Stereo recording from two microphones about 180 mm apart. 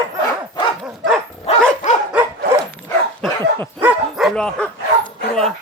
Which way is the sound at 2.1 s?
5° right (ahead or behind).